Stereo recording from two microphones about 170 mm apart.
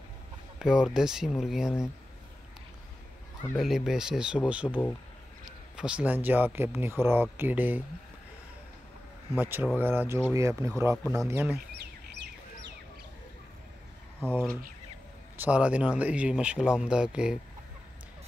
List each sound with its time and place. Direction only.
0.6 s speech: 5° right (ahead or behind)
3.5 s speech: centre (ahead or behind)
5.8 s speech: 5° right (ahead or behind)
9.3 s speech: 10° right (ahead or behind)
14.3 s speech: 5° left (ahead or behind)
15.3 s speech: 10° right (ahead or behind)